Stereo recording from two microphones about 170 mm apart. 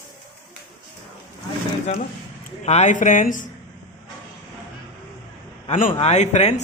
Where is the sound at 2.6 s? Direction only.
40° left (ahead or behind).